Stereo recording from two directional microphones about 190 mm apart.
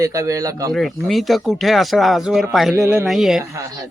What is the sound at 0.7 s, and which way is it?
Speech, centre (ahead or behind).